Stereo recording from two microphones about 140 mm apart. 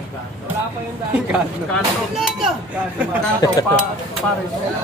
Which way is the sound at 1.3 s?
Centre (ahead or behind).